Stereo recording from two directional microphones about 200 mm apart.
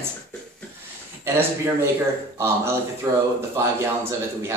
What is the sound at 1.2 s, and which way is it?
Speech, 10° right (ahead or behind).